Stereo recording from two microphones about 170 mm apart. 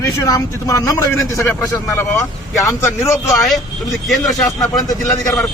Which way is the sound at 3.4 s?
Centre (ahead or behind).